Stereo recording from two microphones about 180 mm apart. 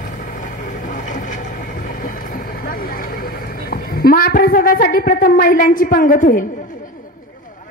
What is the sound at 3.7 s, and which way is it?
A woman's voice, 55° left (ahead or behind).